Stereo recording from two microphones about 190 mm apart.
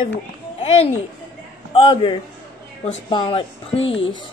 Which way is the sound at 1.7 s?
25° left (ahead or behind).